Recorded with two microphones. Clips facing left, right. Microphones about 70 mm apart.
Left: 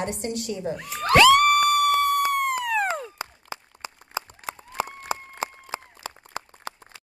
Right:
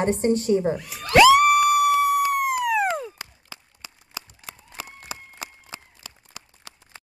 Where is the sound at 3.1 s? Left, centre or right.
Left.